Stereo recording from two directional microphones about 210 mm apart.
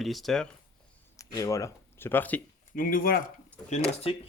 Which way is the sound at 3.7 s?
30° left (ahead or behind).